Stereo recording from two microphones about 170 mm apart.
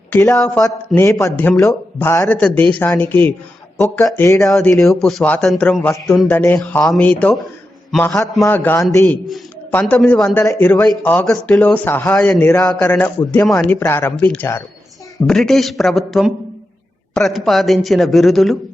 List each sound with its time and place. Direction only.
0.1 s speech: 15° left (ahead or behind)
0.3 s a man's voice: centre (ahead or behind)
0.6 s a man's voice: 20° left (ahead or behind)
4.0 s a man's voice: 10° left (ahead or behind)
4.4 s a man's voice: centre (ahead or behind)
10.3 s a man's voice: 15° left (ahead or behind)
15.3 s a man's voice: centre (ahead or behind)